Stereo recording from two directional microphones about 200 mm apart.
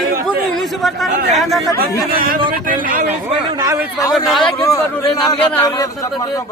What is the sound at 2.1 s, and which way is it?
Speech, 45° right (ahead or behind).